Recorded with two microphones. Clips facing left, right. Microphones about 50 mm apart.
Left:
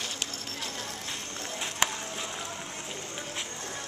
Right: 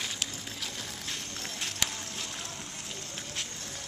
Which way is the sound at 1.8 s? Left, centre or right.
Left.